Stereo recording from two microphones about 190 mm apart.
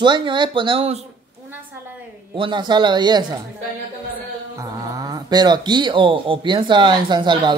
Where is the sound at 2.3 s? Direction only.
25° right (ahead or behind).